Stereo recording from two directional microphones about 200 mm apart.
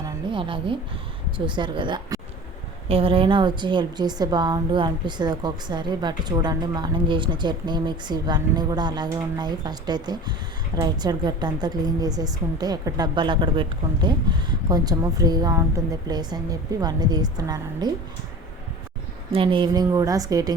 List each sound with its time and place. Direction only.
0.0 s a woman's voice: 25° right (ahead or behind)
19.3 s a woman's voice: 25° right (ahead or behind)